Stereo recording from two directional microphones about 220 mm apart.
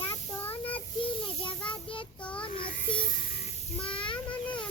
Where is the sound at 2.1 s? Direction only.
5° left (ahead or behind).